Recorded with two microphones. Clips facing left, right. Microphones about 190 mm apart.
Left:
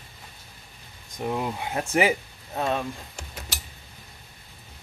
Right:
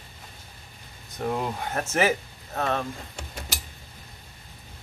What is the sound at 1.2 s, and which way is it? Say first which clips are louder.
Speech: even; 5° left (ahead or behind).